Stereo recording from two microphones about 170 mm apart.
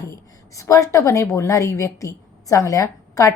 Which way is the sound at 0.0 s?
20° left (ahead or behind).